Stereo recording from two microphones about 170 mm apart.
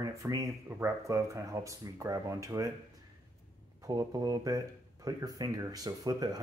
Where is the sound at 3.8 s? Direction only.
20° right (ahead or behind).